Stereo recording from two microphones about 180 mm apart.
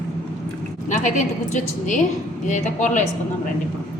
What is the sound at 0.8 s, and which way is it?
A woman's voice, 45° left (ahead or behind).